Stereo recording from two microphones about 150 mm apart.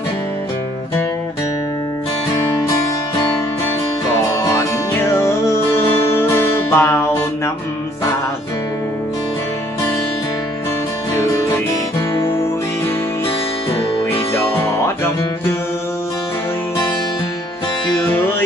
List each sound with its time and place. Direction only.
4.3 s music: 20° left (ahead or behind)